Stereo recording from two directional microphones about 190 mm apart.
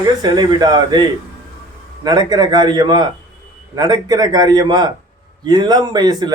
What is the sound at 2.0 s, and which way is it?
A man's voice, 20° right (ahead or behind).